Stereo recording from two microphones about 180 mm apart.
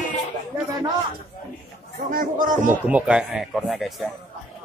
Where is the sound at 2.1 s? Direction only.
50° right (ahead or behind).